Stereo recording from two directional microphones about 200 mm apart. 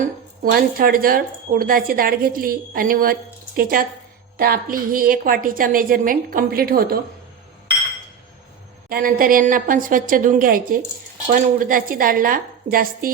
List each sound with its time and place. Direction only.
0.5 s a woman's voice: 45° right (ahead or behind)
8.9 s a woman's voice: 45° right (ahead or behind)